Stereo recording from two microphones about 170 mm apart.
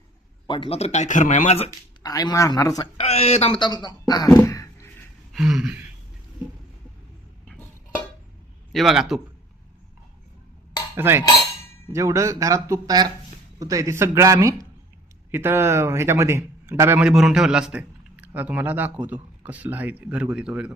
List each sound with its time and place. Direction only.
0.4 s speech: 30° left (ahead or behind)
2.0 s speech: 20° left (ahead or behind)
3.0 s speech: 40° left (ahead or behind)
3.6 s speech: 25° left (ahead or behind)
4.4 s a sound: 20° left (ahead or behind)
5.3 s a man's voice: 5° right (ahead or behind)
8.7 s a man's voice: centre (ahead or behind)
10.9 s a man's voice: 15° right (ahead or behind)